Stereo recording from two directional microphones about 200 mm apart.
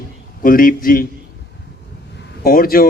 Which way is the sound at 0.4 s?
45° left (ahead or behind).